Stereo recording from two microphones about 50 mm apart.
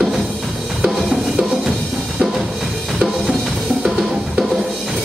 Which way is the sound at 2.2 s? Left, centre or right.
Centre.